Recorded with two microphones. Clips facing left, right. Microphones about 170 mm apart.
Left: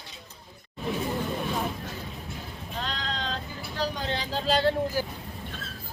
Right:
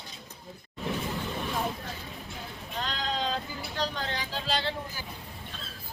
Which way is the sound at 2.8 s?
5° right (ahead or behind).